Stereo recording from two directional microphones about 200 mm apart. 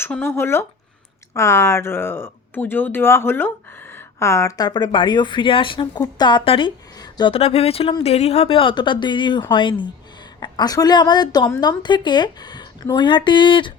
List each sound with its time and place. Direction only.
0.0 s speech: 10° left (ahead or behind)